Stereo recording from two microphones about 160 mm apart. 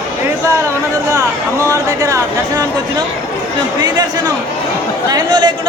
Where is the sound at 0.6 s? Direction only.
20° right (ahead or behind).